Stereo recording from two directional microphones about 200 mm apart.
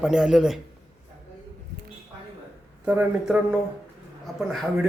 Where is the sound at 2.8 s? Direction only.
5° right (ahead or behind).